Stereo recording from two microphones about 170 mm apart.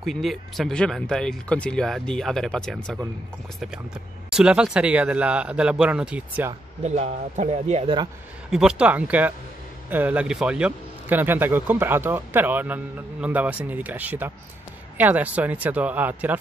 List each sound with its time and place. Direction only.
0.0 s speech: centre (ahead or behind)
4.3 s a man's voice: 5° right (ahead or behind)
6.8 s speech: 40° right (ahead or behind)
8.5 s a man's voice: 5° right (ahead or behind)